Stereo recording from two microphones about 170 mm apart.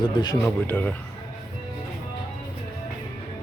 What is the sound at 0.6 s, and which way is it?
Speech, 10° left (ahead or behind).